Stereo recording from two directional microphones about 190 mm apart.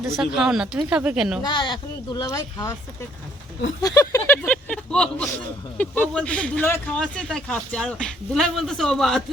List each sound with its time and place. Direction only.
0.2 s speech: 5° right (ahead or behind)
1.4 s speech: 25° left (ahead or behind)
3.8 s speech: 15° left (ahead or behind)